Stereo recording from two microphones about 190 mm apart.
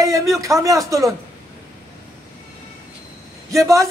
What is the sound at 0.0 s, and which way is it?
Speech, 15° right (ahead or behind).